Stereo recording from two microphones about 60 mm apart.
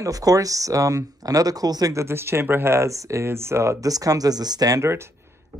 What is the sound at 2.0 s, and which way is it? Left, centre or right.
Speech, right.